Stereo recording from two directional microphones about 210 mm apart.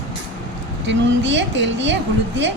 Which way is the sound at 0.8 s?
60° right (ahead or behind).